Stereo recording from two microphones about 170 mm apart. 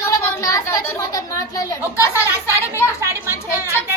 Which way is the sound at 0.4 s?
20° left (ahead or behind).